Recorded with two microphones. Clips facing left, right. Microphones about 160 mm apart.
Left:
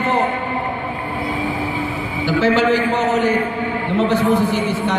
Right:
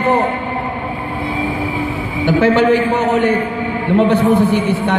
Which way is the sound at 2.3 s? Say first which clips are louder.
Right 4 dB; 55° right (ahead or behind).